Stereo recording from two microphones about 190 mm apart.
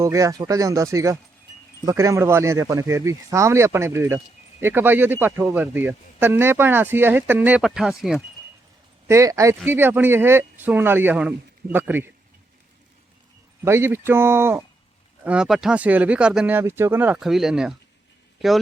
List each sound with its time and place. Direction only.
0.0 s speech: 15° right (ahead or behind)
9.0 s speech: 15° right (ahead or behind)
13.7 s speech: 15° right (ahead or behind)